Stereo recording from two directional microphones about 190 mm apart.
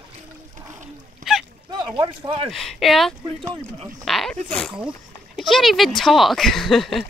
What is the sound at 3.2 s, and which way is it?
Speech, 25° right (ahead or behind).